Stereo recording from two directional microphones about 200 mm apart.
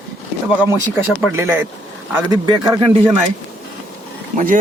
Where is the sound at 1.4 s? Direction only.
10° right (ahead or behind).